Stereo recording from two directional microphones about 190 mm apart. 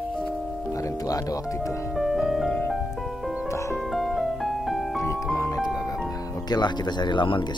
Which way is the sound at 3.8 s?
Centre (ahead or behind).